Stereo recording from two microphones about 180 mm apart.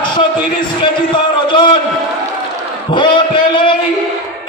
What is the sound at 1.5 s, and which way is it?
Speech, 25° left (ahead or behind).